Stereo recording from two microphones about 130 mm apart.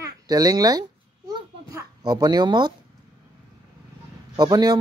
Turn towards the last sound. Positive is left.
turn(degrees=-30)  # may be behind; listen again after turning